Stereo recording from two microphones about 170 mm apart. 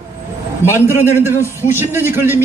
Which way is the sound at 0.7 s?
10° right (ahead or behind).